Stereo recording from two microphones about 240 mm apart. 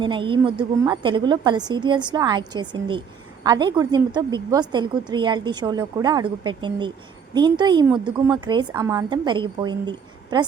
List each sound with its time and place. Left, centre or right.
0.0 s a woman's voice: centre